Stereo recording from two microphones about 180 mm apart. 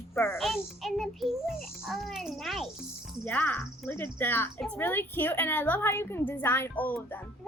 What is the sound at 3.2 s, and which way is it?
A child's voice, 10° left (ahead or behind).